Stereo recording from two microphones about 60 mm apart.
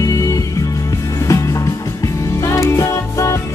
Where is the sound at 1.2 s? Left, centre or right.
Left.